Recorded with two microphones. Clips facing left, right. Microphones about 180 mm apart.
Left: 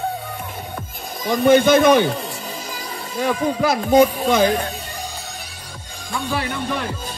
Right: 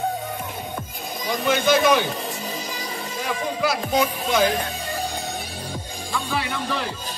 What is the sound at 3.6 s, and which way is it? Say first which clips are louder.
Speech: left 8 dB; 50° left (ahead or behind).